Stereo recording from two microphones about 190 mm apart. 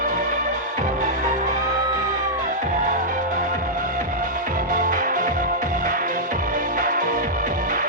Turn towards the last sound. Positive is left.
turn(degrees=-45)  # may be behind; listen again after turning